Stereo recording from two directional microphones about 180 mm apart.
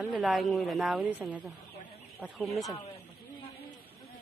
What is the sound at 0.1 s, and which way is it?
A woman's voice, centre (ahead or behind).